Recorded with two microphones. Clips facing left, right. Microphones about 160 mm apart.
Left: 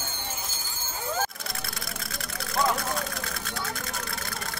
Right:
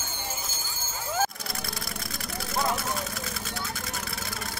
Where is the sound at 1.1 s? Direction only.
5° right (ahead or behind).